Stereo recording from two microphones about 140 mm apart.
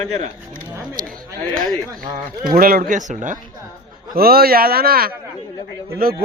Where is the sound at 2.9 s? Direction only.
65° right (ahead or behind).